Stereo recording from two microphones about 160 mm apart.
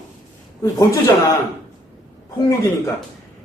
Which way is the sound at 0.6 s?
25° left (ahead or behind).